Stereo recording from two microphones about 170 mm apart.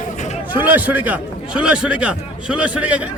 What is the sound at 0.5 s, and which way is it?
A man's voice, 10° right (ahead or behind).